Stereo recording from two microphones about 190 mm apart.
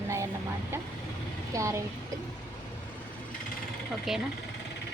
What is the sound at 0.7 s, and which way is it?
Vehicle, 10° right (ahead or behind).